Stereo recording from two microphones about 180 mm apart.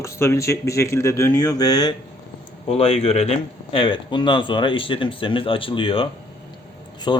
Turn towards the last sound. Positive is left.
turn(degrees=25)  # may be behind; listen again after turning